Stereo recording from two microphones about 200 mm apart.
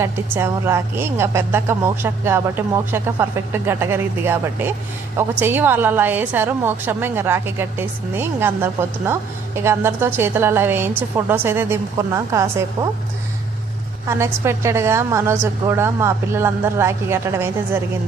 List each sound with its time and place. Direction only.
0.0 s a woman's voice: 10° right (ahead or behind)
14.1 s a woman's voice: 15° right (ahead or behind)